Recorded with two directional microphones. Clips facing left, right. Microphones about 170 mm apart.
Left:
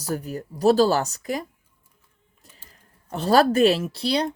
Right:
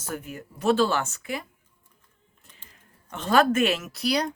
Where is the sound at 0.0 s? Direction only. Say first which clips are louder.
Left 6 dB; 35° left (ahead or behind).